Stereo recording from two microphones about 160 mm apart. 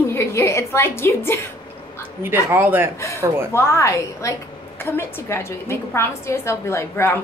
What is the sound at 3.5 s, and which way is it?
A woman's voice, 20° left (ahead or behind).